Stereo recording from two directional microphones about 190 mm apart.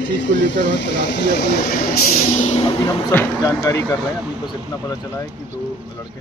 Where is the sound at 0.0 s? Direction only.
70° left (ahead or behind); by 2.6 s 40° left (ahead or behind).